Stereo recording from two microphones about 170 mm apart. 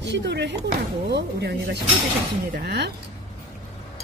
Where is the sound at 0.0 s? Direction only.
90° right.